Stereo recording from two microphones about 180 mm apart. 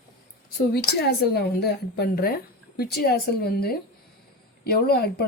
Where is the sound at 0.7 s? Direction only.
65° left (ahead or behind).